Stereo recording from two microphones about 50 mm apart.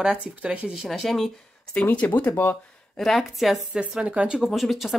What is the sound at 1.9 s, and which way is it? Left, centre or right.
Speech, left.